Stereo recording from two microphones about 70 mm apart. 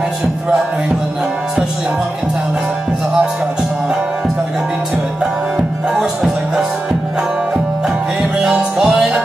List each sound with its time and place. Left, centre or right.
5.9 s music: centre
8.2 s music: centre